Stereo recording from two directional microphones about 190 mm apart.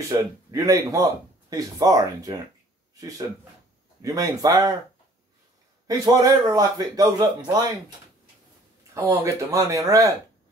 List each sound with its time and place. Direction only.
0.1 s speech: 15° right (ahead or behind)
5.9 s speech: 20° right (ahead or behind)
8.9 s speech: 15° right (ahead or behind)